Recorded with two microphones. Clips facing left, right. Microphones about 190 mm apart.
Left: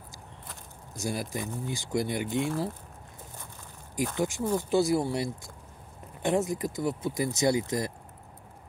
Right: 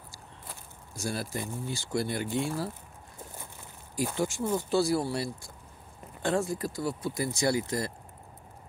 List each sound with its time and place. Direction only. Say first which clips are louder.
0.9 s speech: left 1 dB; 15° left (ahead or behind)
4.2 s speech: left 1 dB; 15° left (ahead or behind)